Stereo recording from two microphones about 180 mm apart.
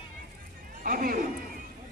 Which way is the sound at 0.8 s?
50° right (ahead or behind).